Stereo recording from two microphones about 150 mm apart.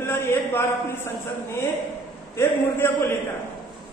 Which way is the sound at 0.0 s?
15° left (ahead or behind).